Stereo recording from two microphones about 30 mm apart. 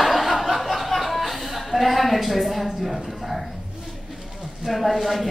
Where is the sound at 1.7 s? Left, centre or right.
Centre.